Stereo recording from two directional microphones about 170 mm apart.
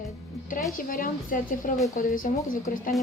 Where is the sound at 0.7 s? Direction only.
55° left (ahead or behind).